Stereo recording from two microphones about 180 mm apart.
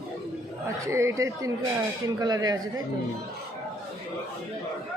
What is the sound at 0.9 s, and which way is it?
Speech, 15° right (ahead or behind).